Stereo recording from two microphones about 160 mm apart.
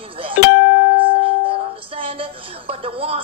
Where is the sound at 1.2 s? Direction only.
35° right (ahead or behind).